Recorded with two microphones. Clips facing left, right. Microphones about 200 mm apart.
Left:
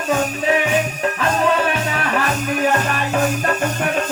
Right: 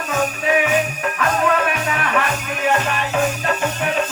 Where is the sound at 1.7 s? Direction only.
30° left (ahead or behind).